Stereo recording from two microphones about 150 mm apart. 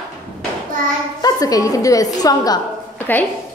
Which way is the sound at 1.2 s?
25° left (ahead or behind).